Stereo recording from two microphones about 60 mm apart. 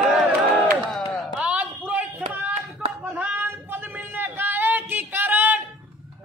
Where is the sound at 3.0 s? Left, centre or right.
Centre.